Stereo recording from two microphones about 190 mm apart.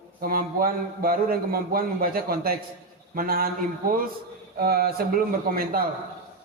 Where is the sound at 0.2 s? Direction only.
50° right (ahead or behind).